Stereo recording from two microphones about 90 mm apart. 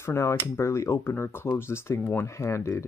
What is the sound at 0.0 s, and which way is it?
Speech, 30° left (ahead or behind).